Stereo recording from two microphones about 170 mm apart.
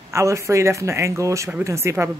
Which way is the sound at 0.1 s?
15° right (ahead or behind).